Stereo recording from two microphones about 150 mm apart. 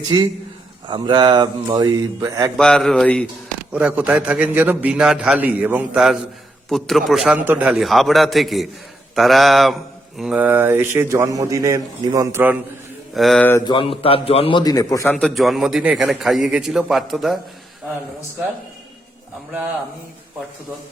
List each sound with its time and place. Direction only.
0.1 s speech: 30° right (ahead or behind)
2.6 s a man's voice: 5° left (ahead or behind)
3.7 s a man's voice: 10° right (ahead or behind)
6.7 s a man's voice: centre (ahead or behind)
7.3 s a man's voice: 10° right (ahead or behind)
13.1 s a man's voice: centre (ahead or behind)
13.7 s a man's voice: 35° left (ahead or behind)
14.6 s a man's voice: 25° left (ahead or behind)
15.0 s a man's voice: 5° left (ahead or behind)